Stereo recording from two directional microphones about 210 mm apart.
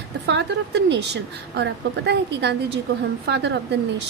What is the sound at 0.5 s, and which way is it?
A woman's voice, 55° right (ahead or behind).